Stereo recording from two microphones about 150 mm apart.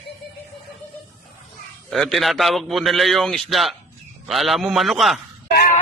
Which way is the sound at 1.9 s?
Centre (ahead or behind).